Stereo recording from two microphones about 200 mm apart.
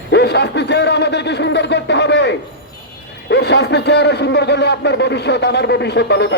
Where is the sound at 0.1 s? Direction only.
55° left (ahead or behind).